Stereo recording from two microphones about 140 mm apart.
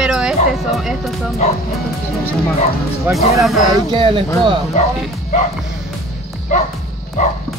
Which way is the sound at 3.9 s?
40° right (ahead or behind).